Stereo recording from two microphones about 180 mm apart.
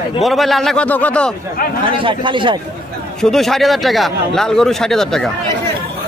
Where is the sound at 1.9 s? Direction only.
30° right (ahead or behind).